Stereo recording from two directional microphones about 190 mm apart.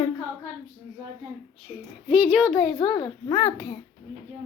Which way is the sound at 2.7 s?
25° left (ahead or behind).